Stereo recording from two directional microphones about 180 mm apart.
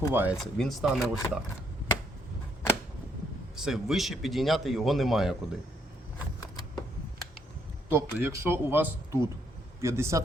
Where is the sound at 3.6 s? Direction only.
Centre (ahead or behind).